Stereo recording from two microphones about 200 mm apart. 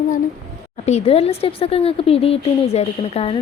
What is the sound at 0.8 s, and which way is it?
Speech, 30° left (ahead or behind).